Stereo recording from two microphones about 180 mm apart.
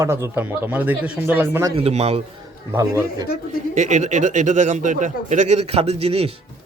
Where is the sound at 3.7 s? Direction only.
40° right (ahead or behind).